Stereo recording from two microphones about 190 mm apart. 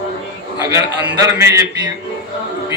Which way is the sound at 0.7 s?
15° right (ahead or behind).